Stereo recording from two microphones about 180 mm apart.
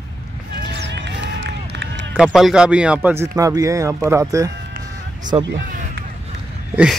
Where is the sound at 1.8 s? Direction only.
90° right.